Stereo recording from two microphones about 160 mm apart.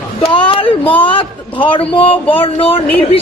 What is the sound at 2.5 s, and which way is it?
Speech, 35° left (ahead or behind).